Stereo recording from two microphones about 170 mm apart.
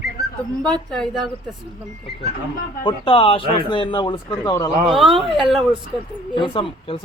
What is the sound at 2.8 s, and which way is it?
Speech, 30° left (ahead or behind).